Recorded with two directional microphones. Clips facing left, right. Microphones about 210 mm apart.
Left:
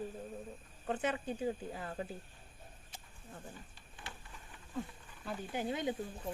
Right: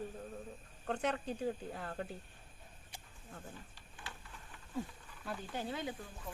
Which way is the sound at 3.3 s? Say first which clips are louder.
Left 1 dB; 10° left (ahead or behind).